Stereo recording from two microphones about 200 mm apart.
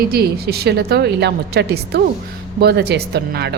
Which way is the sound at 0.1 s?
50° right (ahead or behind).